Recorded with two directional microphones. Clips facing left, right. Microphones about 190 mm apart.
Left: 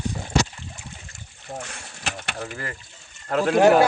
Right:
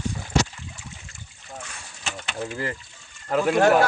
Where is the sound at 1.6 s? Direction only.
60° left (ahead or behind).